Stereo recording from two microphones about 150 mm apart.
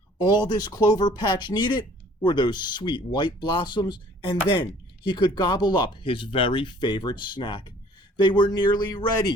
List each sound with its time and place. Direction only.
0.3 s speech: 30° left (ahead or behind)